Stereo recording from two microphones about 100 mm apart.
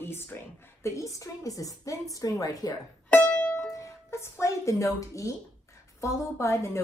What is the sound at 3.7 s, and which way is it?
Music, 30° left (ahead or behind).